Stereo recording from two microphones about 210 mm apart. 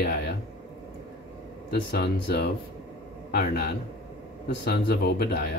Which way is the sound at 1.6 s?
50° left (ahead or behind).